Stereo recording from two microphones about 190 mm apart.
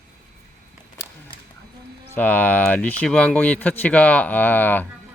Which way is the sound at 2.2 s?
10° left (ahead or behind).